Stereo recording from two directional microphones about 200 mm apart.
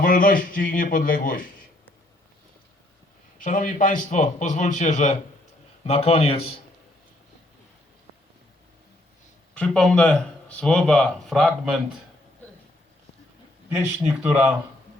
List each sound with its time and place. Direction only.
0.0 s a man's voice: 45° left (ahead or behind)
3.3 s a man's voice: 40° left (ahead or behind)
9.6 s speech: 5° left (ahead or behind)
13.7 s speech: 10° right (ahead or behind)